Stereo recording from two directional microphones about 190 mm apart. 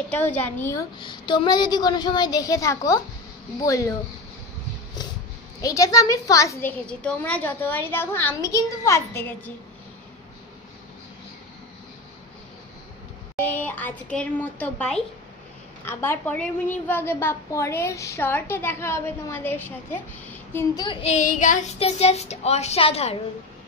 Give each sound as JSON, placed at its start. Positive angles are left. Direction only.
{"t": 0.1, "sound": "a woman's voice", "side_deg": 10}
{"t": 0.9, "sound": "a woman's voice", "side_deg": 25}
{"t": 5.6, "sound": "a woman's voice", "side_deg": 20}
{"t": 6.9, "sound": "a woman's voice", "side_deg": 5}
{"t": 13.4, "sound": "a woman's voice", "side_deg": 10}
{"t": 20.8, "sound": "speech", "side_deg": 30}